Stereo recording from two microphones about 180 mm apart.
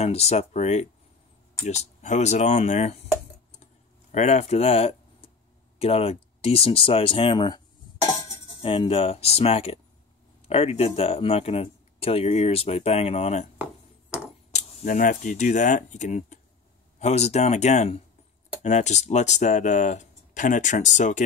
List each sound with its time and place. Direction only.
0.0 s speech: 35° left (ahead or behind)
4.1 s speech: 40° left (ahead or behind)
14.5 s speech: 45° left (ahead or behind)